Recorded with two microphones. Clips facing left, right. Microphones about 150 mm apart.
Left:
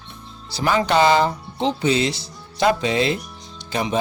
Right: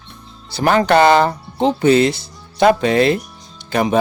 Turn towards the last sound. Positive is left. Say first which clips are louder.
# right 6 dB
turn(degrees=-55)  # may be behind; listen again after turning